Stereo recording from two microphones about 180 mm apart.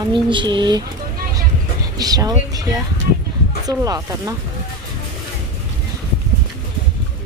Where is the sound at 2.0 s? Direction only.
20° right (ahead or behind).